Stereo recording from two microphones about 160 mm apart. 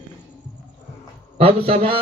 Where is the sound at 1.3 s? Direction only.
40° right (ahead or behind).